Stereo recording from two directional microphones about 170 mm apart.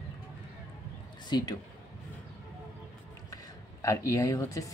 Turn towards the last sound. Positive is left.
turn(degrees=20)  # may be behind; listen again after turning